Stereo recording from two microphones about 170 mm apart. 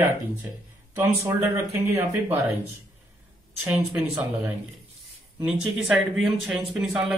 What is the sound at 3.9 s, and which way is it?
Speech, 10° right (ahead or behind).